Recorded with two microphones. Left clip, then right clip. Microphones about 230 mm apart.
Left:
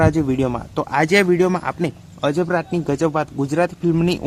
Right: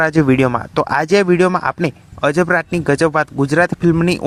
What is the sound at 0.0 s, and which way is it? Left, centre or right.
Speech, right.